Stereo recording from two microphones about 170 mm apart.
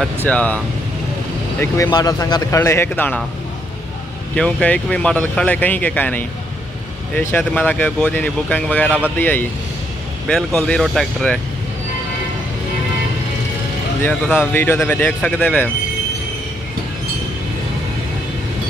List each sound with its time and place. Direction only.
0.2 s speech: 10° left (ahead or behind)
1.6 s speech: 20° left (ahead or behind)
4.4 s speech: 5° left (ahead or behind)
10.2 s speech: 5° left (ahead or behind)
14.0 s speech: 10° left (ahead or behind)